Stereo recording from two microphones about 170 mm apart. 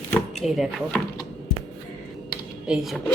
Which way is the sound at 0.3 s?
Centre (ahead or behind).